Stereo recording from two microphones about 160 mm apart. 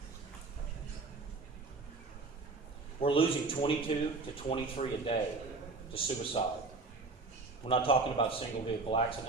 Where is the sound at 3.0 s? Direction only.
35° left (ahead or behind).